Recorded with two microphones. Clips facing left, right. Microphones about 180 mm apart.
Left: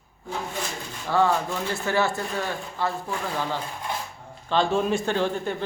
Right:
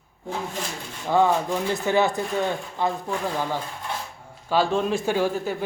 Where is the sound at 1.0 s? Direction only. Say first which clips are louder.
Right 2 dB; 15° right (ahead or behind).